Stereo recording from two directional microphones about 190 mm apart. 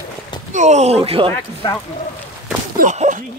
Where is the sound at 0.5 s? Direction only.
35° right (ahead or behind).